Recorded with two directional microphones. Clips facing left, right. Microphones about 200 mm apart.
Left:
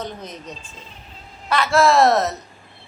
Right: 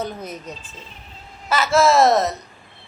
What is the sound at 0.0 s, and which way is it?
Speech, 10° right (ahead or behind).